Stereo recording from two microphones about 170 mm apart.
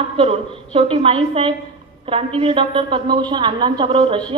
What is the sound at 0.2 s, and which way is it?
A woman's voice, 35° right (ahead or behind).